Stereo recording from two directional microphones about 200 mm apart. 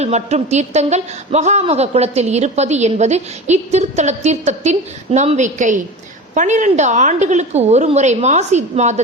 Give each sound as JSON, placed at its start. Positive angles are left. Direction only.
{"t": 0.0, "sound": "a woman's voice", "side_deg": -35}